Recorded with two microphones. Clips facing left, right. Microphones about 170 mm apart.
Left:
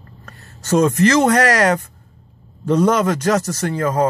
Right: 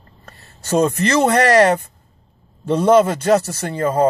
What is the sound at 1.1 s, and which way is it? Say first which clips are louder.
Speech: right 1 dB; 30° right (ahead or behind).